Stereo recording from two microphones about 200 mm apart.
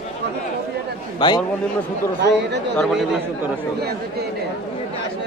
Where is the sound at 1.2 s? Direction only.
20° left (ahead or behind).